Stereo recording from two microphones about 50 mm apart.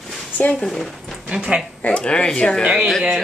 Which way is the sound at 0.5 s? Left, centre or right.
Centre.